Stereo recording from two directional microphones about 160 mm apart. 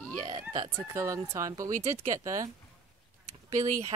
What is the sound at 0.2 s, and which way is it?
Speech, 25° right (ahead or behind).